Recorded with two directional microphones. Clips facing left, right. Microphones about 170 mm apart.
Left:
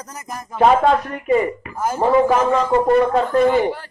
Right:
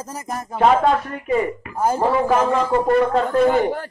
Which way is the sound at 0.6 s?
Centre (ahead or behind).